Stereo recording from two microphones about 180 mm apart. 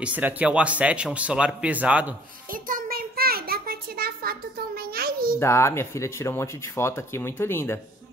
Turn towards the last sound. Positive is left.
turn(degrees=15)  # may be behind; listen again after turning